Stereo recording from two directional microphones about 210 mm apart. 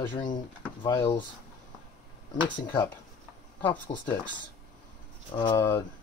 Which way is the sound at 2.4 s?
20° left (ahead or behind).